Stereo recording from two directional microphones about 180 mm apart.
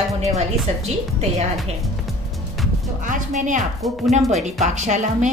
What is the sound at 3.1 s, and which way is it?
A woman's voice, 45° right (ahead or behind).